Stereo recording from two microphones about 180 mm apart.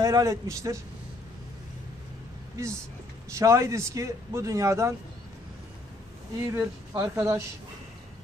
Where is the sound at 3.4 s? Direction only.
15° right (ahead or behind).